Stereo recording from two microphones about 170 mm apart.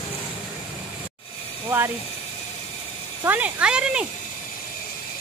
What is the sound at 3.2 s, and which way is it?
Speech, 10° right (ahead or behind).